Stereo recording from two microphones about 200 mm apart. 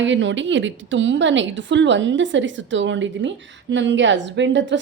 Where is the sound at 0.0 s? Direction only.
65° right (ahead or behind).